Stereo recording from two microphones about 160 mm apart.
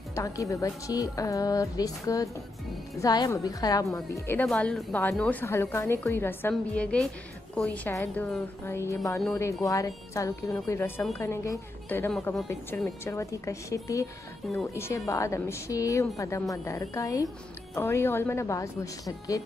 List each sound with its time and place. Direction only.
0.1 s a woman's voice: 20° left (ahead or behind)